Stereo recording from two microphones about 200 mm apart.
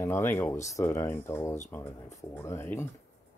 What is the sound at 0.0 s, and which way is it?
Speech, 10° left (ahead or behind).